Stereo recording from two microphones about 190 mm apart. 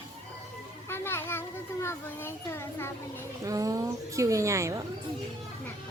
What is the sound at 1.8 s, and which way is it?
A child's voice, 15° left (ahead or behind).